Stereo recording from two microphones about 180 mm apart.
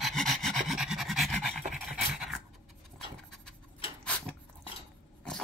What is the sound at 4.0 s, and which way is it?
Dog, 5° left (ahead or behind).